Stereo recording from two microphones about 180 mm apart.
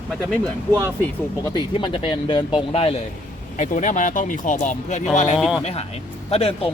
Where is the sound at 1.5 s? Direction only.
25° left (ahead or behind).